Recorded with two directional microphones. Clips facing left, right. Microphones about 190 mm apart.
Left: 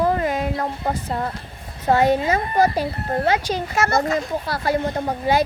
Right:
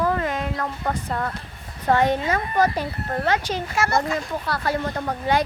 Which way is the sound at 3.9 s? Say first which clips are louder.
Left 2 dB; 45° left (ahead or behind).